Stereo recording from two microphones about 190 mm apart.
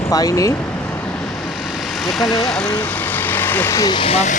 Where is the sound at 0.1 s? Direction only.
20° left (ahead or behind).